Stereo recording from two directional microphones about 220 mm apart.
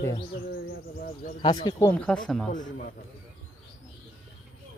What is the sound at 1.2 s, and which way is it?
Speech, 20° left (ahead or behind).